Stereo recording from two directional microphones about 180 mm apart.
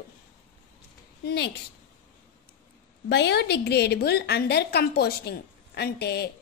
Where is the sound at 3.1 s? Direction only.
70° left (ahead or behind).